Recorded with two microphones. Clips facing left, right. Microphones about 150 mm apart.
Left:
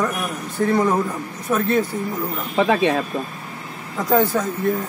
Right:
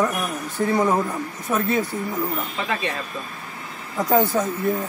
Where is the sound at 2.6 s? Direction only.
85° left.